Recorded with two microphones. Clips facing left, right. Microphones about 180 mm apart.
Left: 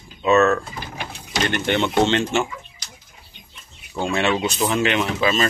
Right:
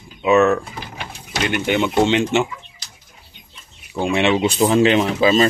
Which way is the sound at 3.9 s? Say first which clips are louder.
Right 4 dB; 15° right (ahead or behind).